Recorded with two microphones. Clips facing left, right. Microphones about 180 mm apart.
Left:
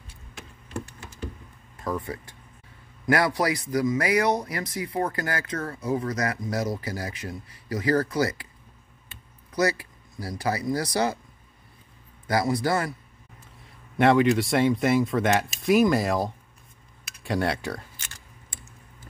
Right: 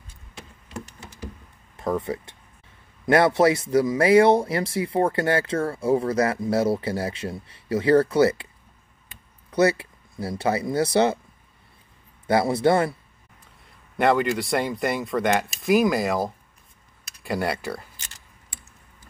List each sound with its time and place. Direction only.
2.1 s speech: 25° right (ahead or behind)
9.5 s speech: 30° right (ahead or behind)
12.3 s speech: 25° right (ahead or behind)
13.9 s speech: centre (ahead or behind)